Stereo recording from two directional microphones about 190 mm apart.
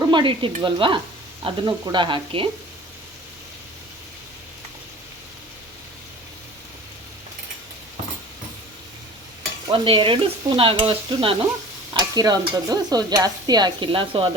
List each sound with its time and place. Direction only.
0.0 s speech: 25° right (ahead or behind)
0.6 s stir: 25° right (ahead or behind)
9.6 s stir: 25° right (ahead or behind)